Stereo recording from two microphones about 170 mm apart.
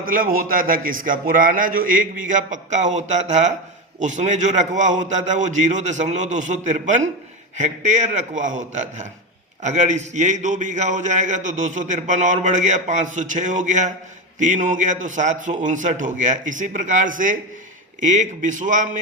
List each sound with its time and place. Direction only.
0.0 s a man's voice: 55° right (ahead or behind)